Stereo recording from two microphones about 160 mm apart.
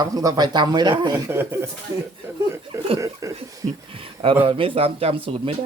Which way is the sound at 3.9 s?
35° right (ahead or behind).